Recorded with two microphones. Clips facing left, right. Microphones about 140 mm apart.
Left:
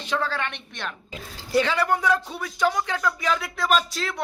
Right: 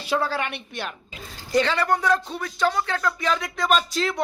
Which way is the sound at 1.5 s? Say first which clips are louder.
Right 1 dB; 10° left (ahead or behind).